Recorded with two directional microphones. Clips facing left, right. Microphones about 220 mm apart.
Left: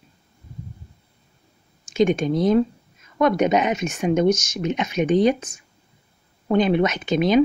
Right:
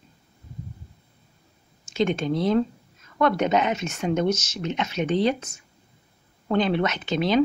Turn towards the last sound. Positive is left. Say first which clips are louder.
# left 4 dB
turn(degrees=15)  # may be behind; listen again after turning